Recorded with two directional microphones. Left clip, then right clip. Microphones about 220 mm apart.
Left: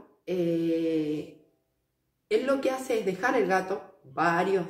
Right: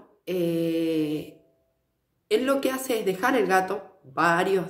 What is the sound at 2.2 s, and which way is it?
Speech, 50° right (ahead or behind).